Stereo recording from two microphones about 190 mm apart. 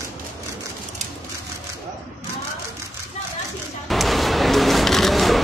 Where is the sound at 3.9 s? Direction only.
Centre (ahead or behind).